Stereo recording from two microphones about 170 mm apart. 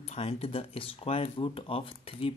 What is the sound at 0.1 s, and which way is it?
Speech, 35° left (ahead or behind).